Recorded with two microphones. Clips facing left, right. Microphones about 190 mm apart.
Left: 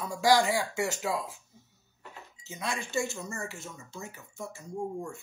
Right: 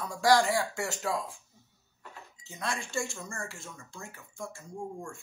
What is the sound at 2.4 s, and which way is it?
Speech, centre (ahead or behind).